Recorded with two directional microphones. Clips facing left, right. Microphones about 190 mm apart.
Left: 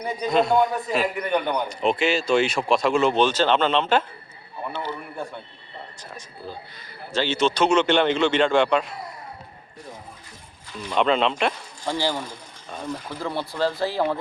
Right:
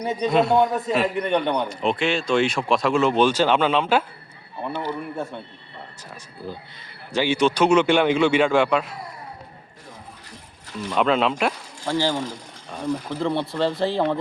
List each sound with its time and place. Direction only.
0.1 s speech: centre (ahead or behind)
1.4 s a man's voice: 30° right (ahead or behind)
1.6 s speech: centre (ahead or behind)
5.1 s speech: centre (ahead or behind)
7.1 s speech: 15° right (ahead or behind)
10.8 s speech: centre (ahead or behind)
11.9 s speech: 15° left (ahead or behind)